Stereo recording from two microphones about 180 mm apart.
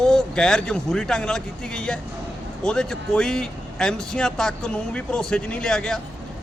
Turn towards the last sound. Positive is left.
turn(degrees=5)  # may be behind; listen again after turning